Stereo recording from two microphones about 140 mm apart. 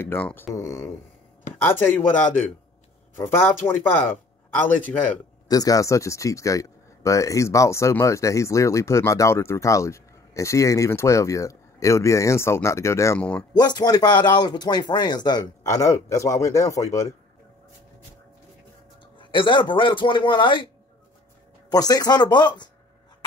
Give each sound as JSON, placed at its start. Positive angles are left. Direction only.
{"t": 0.0, "sound": "speech", "side_deg": 15}
{"t": 5.5, "sound": "speech", "side_deg": 25}
{"t": 13.2, "sound": "speech", "side_deg": 10}
{"t": 13.5, "sound": "speech", "side_deg": 30}
{"t": 19.1, "sound": "a man's voice", "side_deg": 35}
{"t": 21.6, "sound": "a man's voice", "side_deg": 25}